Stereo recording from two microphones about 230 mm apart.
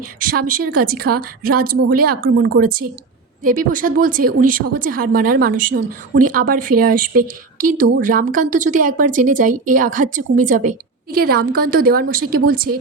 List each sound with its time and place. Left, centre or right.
0.3 s a woman's voice: right